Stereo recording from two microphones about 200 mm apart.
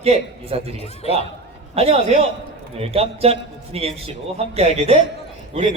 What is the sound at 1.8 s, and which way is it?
A man's voice, 30° right (ahead or behind).